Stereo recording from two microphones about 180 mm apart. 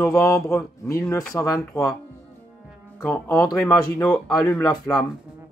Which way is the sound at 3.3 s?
15° left (ahead or behind).